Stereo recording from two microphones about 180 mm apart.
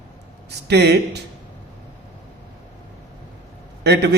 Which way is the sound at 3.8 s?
70° right (ahead or behind).